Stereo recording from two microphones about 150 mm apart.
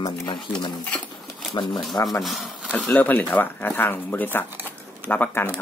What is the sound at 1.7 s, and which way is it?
Speech, centre (ahead or behind).